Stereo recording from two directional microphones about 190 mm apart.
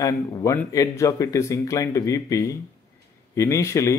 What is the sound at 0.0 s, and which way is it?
Speech, 15° left (ahead or behind).